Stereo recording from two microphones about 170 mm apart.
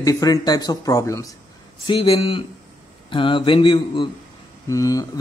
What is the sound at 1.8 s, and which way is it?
Speech, 30° left (ahead or behind).